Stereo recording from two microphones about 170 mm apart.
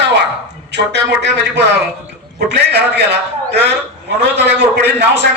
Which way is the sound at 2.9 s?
75° right (ahead or behind).